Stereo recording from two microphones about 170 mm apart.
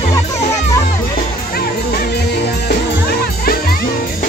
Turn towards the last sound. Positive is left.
turn(degrees=65)  # may be behind; listen again after turning